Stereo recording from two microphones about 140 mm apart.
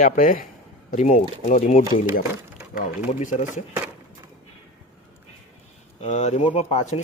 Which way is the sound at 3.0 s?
65° left (ahead or behind).